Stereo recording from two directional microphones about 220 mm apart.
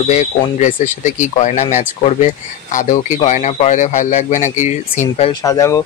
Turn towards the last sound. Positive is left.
turn(degrees=15)  # may be behind; listen again after turning